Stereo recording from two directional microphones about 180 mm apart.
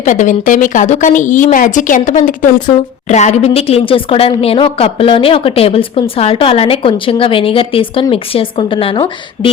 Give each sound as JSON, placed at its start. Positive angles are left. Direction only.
{"t": 0.0, "sound": "a woman's voice", "side_deg": 45}